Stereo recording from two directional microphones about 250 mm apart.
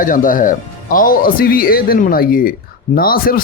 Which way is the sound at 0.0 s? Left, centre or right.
Left.